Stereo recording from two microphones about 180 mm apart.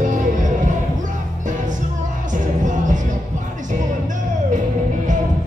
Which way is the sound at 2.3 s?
45° right (ahead or behind).